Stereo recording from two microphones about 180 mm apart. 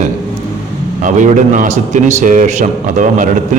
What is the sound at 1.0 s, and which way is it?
A man's voice, 45° right (ahead or behind).